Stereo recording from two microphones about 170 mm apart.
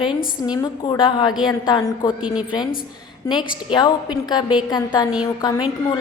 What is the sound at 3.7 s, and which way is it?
A woman's voice, 25° left (ahead or behind).